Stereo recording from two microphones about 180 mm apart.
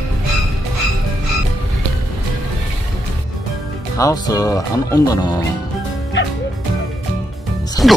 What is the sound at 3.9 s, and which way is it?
Speech, 20° left (ahead or behind).